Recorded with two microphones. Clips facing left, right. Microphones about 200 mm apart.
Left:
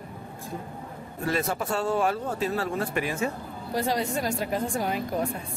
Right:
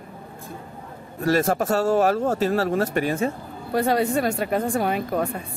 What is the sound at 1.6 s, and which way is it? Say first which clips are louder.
A man's voice: right 6 dB; 45° right (ahead or behind).